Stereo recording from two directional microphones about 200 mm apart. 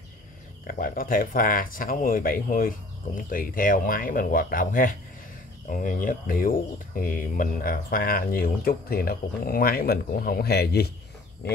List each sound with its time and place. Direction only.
0.7 s speech: 45° left (ahead or behind)